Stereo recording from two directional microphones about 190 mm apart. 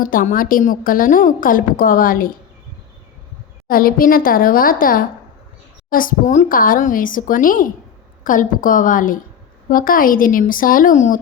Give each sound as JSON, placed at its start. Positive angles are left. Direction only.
{"t": 0.0, "sound": "a woman's voice", "side_deg": 45}
{"t": 3.7, "sound": "a woman's voice", "side_deg": 50}